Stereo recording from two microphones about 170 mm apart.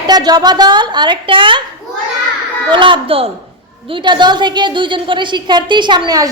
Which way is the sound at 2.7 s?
30° right (ahead or behind).